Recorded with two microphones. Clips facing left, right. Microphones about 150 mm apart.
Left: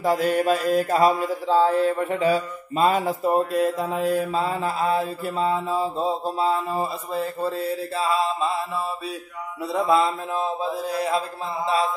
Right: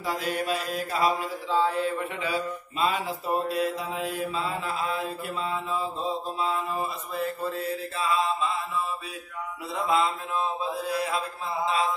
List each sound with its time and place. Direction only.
0.0 s mantra: 45° left (ahead or behind)
9.8 s mantra: 45° left (ahead or behind)